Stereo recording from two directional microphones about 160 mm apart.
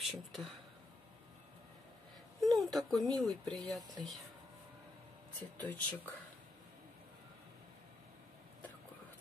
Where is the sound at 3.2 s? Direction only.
5° left (ahead or behind).